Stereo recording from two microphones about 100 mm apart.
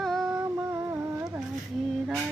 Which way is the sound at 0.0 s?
Centre (ahead or behind).